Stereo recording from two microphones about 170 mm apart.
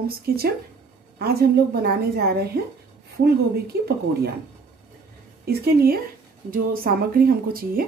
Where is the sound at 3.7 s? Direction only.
70° right (ahead or behind).